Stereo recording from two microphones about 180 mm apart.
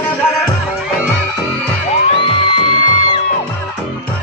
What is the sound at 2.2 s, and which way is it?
Music, 25° left (ahead or behind).